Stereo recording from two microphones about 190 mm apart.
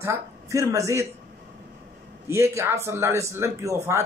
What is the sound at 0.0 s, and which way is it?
Speech, 15° right (ahead or behind).